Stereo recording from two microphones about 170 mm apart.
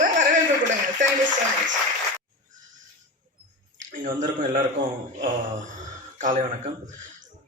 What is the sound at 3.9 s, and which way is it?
Speech, 50° right (ahead or behind).